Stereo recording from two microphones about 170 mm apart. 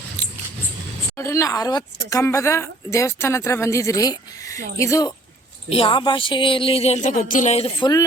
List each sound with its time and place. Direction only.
0.2 s a sound: 10° left (ahead or behind)
1.1 s a woman's voice: 15° left (ahead or behind)
5.6 s speech: 35° left (ahead or behind)